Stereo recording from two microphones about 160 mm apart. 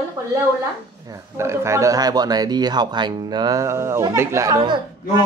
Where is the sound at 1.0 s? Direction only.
20° right (ahead or behind).